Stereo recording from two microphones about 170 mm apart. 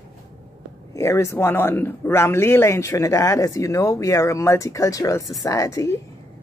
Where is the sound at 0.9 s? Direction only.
15° left (ahead or behind).